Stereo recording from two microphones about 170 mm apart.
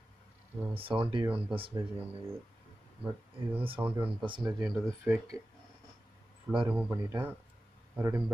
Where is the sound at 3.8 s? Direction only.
15° right (ahead or behind).